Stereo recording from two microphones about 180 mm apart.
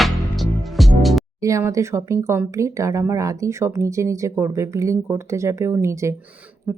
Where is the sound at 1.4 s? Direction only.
15° right (ahead or behind).